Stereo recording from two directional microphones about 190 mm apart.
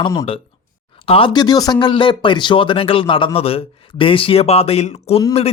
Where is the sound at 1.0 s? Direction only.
30° left (ahead or behind).